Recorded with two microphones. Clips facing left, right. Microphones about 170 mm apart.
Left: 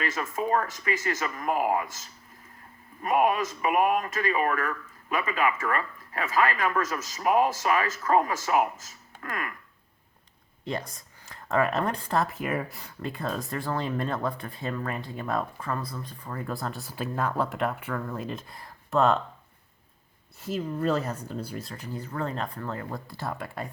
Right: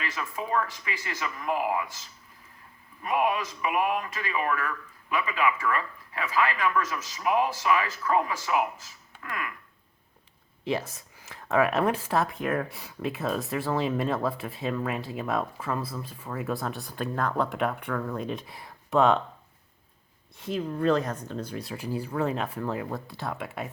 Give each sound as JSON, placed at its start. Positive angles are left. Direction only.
{"t": 0.0, "sound": "speech", "side_deg": 45}
{"t": 10.6, "sound": "speech", "side_deg": -5}
{"t": 20.4, "sound": "speech", "side_deg": 5}